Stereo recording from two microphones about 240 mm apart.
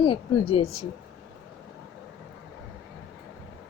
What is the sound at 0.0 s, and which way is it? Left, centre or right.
Speech, left.